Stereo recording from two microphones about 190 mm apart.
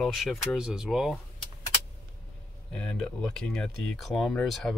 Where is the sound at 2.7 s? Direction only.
5° left (ahead or behind).